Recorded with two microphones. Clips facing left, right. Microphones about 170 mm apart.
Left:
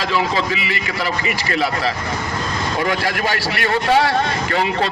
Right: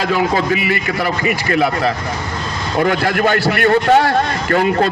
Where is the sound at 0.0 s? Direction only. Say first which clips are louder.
Right 4 dB; 50° right (ahead or behind).